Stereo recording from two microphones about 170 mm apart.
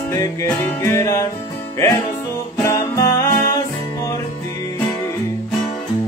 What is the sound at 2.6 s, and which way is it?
Music, 15° left (ahead or behind).